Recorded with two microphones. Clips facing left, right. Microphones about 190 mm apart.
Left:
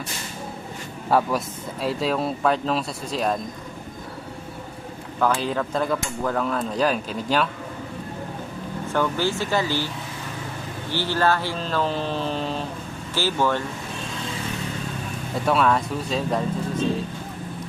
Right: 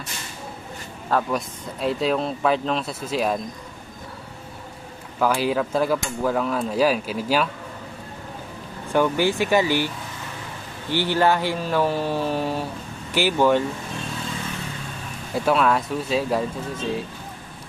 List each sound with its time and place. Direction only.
1.1 s speech: centre (ahead or behind)
5.2 s speech: 5° right (ahead or behind)
8.9 s speech: 15° right (ahead or behind)
10.9 s speech: 15° right (ahead or behind)
15.4 s speech: centre (ahead or behind)